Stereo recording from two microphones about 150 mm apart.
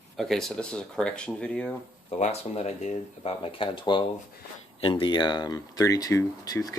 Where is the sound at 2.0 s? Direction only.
45° left (ahead or behind).